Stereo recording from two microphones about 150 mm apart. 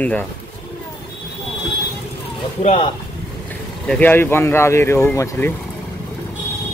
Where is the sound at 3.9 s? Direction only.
10° left (ahead or behind).